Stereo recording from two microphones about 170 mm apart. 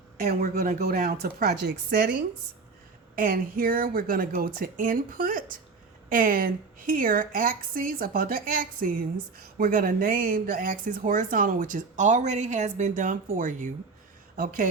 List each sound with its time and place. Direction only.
0.2 s a woman's voice: 60° right (ahead or behind)
3.2 s a woman's voice: 55° right (ahead or behind)